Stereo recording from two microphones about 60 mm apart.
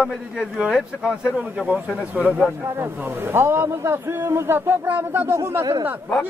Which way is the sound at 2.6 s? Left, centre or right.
Right.